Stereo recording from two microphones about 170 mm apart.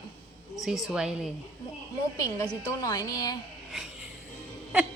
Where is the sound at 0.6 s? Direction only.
5° right (ahead or behind).